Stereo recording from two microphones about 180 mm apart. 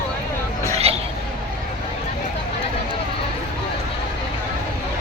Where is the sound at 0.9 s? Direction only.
35° right (ahead or behind).